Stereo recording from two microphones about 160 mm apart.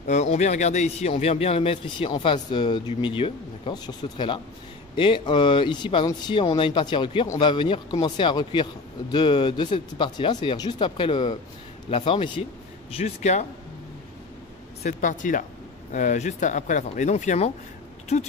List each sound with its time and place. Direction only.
0.0 s a man's voice: 45° left (ahead or behind)
14.8 s speech: 50° left (ahead or behind)